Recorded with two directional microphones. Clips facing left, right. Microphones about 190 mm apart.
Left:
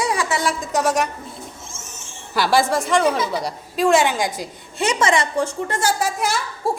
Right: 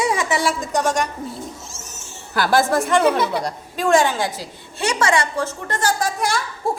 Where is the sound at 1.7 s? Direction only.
40° right (ahead or behind).